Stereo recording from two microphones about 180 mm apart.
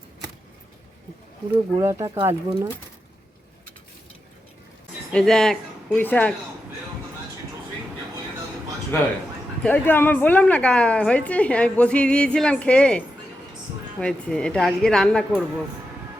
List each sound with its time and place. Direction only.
1.8 s speech: 15° right (ahead or behind)
5.1 s a woman's voice: centre (ahead or behind)
9.6 s a woman's voice: 10° left (ahead or behind)
14.0 s a woman's voice: 5° left (ahead or behind)